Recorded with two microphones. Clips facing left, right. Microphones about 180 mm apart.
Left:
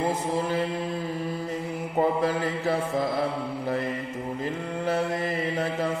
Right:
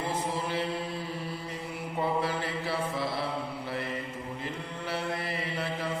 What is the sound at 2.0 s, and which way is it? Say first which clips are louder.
Mantra: left 6 dB; 45° left (ahead or behind).